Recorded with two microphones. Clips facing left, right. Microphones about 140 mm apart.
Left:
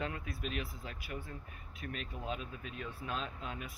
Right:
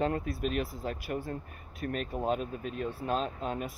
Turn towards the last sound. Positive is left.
turn(degrees=-40)  # may be behind; listen again after turning